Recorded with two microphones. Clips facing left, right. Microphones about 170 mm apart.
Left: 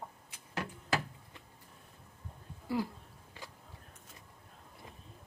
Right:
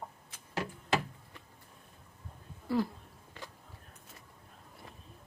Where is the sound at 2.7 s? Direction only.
15° left (ahead or behind).